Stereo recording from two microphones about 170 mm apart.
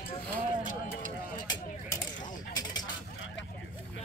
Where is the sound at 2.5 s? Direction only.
25° left (ahead or behind).